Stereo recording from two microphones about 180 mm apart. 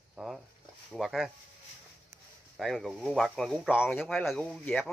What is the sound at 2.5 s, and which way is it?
Speech, centre (ahead or behind).